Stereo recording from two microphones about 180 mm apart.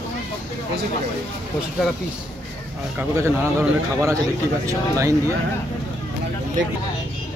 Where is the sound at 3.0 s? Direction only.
10° right (ahead or behind).